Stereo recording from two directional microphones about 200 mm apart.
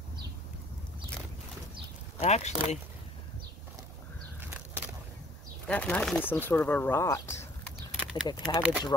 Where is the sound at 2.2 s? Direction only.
35° left (ahead or behind).